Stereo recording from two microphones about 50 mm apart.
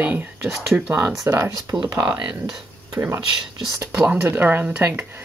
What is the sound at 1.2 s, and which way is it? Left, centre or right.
Speech, right.